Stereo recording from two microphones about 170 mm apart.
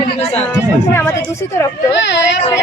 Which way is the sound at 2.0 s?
90° left.